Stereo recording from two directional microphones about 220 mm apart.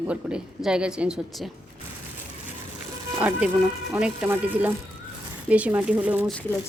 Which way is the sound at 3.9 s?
5° right (ahead or behind).